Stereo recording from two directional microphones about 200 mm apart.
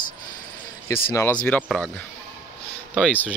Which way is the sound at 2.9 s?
5° left (ahead or behind).